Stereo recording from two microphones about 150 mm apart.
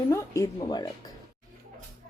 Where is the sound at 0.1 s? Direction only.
20° left (ahead or behind).